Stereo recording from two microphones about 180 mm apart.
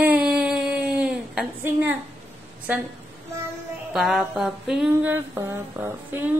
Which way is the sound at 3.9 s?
Centre (ahead or behind).